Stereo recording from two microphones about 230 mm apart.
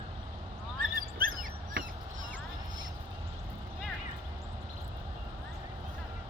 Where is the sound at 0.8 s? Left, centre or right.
Right.